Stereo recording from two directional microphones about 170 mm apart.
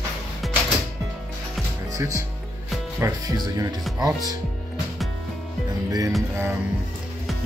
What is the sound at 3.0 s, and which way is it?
Music, 15° right (ahead or behind).